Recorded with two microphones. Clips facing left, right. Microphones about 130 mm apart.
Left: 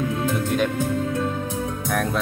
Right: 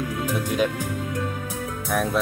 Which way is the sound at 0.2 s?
15° right (ahead or behind).